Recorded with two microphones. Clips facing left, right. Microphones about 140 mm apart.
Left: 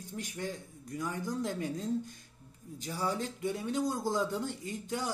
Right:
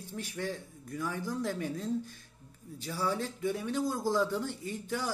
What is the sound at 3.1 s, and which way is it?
Speech, 20° left (ahead or behind).